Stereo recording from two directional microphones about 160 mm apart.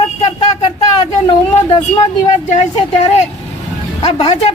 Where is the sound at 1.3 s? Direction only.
35° left (ahead or behind).